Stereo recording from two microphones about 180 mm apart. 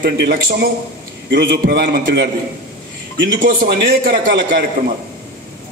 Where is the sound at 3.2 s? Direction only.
90° right.